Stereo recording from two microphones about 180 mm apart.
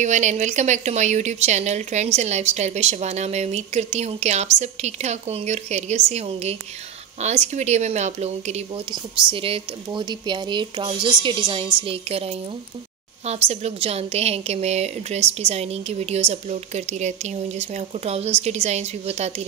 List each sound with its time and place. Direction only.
0.0 s a woman's voice: 40° right (ahead or behind)